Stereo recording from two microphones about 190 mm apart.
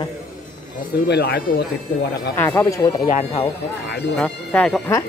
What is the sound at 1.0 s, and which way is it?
Speech, 60° left (ahead or behind).